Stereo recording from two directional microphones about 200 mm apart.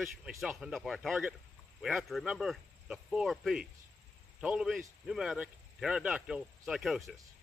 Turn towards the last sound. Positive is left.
turn(degrees=0)  # may be behind; listen again after turning